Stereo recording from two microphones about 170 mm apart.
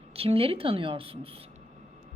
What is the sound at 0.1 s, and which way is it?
A woman's voice, 35° right (ahead or behind).